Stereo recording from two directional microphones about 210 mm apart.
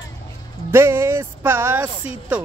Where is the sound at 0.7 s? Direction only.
10° right (ahead or behind).